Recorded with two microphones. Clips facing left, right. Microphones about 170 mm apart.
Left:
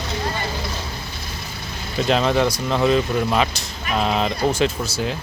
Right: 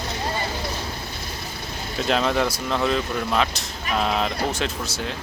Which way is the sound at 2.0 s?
Centre (ahead or behind).